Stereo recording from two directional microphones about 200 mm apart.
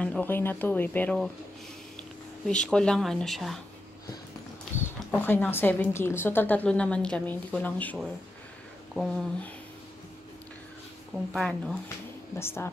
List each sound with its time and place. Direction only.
0.0 s speech: 10° left (ahead or behind)
2.4 s speech: 5° left (ahead or behind)
4.7 s speech: 10° left (ahead or behind)
11.3 s speech: centre (ahead or behind)
12.4 s speech: 10° left (ahead or behind)